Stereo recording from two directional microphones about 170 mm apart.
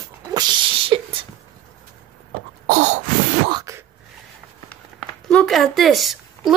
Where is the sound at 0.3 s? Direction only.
25° right (ahead or behind).